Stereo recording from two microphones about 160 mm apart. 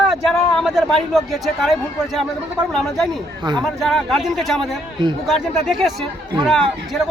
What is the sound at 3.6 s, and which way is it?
Speech, centre (ahead or behind).